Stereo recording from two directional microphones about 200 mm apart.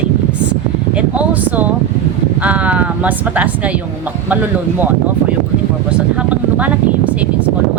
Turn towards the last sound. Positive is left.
turn(degrees=-5)  # may be behind; listen again after turning